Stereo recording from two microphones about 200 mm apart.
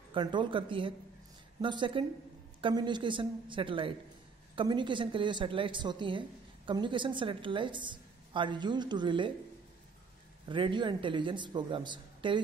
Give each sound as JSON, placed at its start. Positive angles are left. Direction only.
{"t": 0.1, "sound": "a woman's voice", "side_deg": -25}
{"t": 10.5, "sound": "a woman's voice", "side_deg": -25}